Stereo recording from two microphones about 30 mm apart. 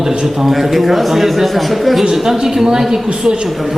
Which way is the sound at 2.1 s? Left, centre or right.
Centre.